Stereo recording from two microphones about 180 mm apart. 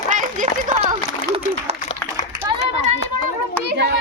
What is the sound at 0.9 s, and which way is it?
Speech, 30° right (ahead or behind).